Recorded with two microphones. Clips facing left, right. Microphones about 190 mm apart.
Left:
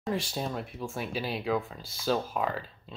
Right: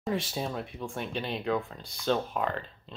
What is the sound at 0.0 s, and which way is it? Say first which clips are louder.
Speech: even; centre (ahead or behind).